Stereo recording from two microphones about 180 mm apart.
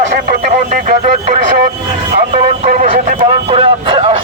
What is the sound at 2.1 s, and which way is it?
Vehicle, 50° right (ahead or behind).